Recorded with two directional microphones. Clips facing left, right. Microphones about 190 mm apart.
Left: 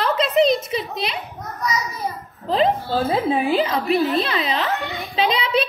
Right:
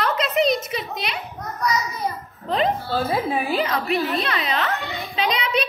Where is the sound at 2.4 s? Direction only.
30° left (ahead or behind).